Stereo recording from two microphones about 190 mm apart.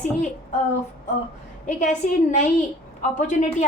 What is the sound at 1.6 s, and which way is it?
Speech, 40° left (ahead or behind).